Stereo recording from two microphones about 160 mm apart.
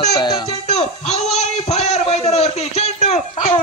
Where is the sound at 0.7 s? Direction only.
40° left (ahead or behind).